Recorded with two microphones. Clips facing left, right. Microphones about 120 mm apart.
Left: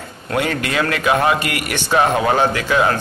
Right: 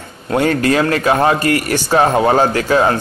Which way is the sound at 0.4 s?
40° right (ahead or behind).